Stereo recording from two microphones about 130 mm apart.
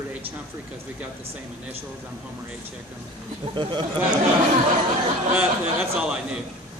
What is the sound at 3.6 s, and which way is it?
Speech, 40° right (ahead or behind).